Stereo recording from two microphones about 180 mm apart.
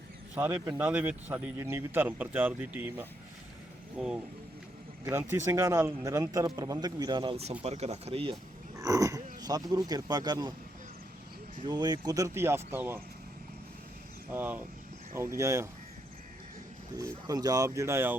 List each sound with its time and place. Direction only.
0.3 s a man's voice: 10° right (ahead or behind); by 8.4 s 30° right (ahead or behind)
8.8 s speech: 20° right (ahead or behind)
11.6 s speech: 25° right (ahead or behind)
14.3 s speech: 10° right (ahead or behind)
17.0 s speech: 20° right (ahead or behind)